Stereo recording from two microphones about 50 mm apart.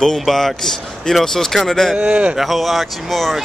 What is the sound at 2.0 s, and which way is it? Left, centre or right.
Speech, right.